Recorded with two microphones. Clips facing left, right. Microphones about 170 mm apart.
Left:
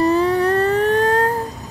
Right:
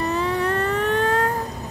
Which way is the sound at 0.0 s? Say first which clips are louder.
Left 7 dB; 40° left (ahead or behind).